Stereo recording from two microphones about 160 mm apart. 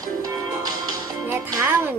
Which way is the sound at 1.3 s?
20° right (ahead or behind).